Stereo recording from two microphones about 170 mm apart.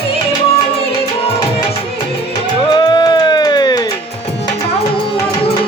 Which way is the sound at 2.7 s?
25° left (ahead or behind).